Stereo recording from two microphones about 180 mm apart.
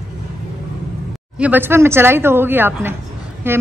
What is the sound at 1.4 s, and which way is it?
Speech, 10° right (ahead or behind).